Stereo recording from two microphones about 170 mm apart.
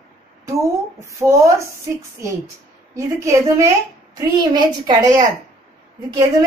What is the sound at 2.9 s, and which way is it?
A man's voice, 15° right (ahead or behind).